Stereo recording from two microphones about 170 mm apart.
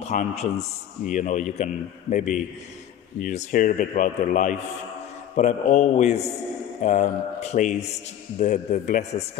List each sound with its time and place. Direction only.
0.0 s speech: 40° left (ahead or behind)